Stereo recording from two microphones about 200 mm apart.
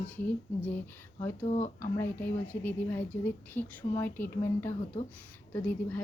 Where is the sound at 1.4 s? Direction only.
35° left (ahead or behind).